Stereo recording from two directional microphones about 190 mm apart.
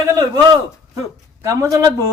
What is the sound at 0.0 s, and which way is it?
A man's voice, 20° right (ahead or behind).